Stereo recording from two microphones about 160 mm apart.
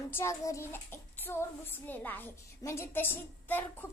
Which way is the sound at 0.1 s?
15° left (ahead or behind).